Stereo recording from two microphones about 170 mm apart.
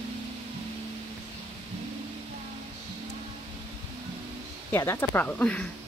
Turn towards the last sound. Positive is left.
turn(degrees=5)  # may be behind; listen again after turning